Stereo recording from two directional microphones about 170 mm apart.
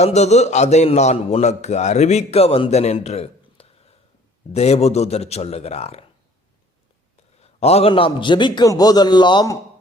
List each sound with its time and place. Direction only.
0.0 s a man's voice: 40° left (ahead or behind)
7.4 s a man's voice: 40° left (ahead or behind)